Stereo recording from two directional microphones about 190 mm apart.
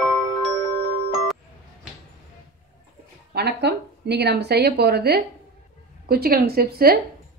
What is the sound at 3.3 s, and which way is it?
A woman's voice, 60° right (ahead or behind).